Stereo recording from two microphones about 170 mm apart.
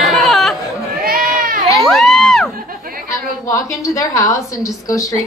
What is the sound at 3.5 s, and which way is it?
A woman's voice, 20° left (ahead or behind).